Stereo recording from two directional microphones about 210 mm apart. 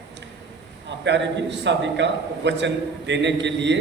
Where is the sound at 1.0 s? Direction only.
55° right (ahead or behind).